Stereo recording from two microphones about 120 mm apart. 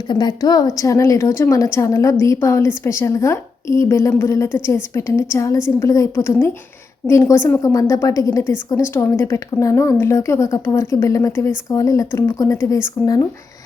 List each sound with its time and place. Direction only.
0.1 s a woman's voice: 35° left (ahead or behind)